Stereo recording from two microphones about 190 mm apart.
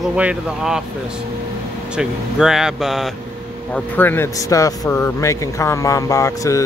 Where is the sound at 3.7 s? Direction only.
10° left (ahead or behind).